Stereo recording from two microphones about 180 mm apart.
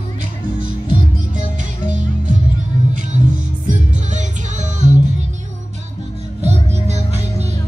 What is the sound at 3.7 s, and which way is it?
Music, 40° right (ahead or behind).